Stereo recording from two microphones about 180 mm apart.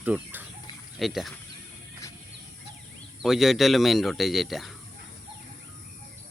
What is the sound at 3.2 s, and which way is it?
Speech, centre (ahead or behind).